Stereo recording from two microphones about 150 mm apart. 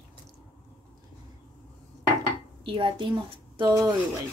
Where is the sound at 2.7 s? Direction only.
35° right (ahead or behind).